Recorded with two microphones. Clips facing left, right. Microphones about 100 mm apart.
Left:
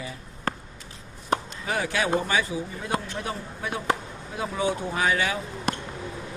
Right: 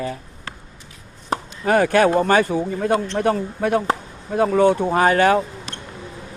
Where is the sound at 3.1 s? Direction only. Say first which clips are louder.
Right 12 dB; 65° right (ahead or behind).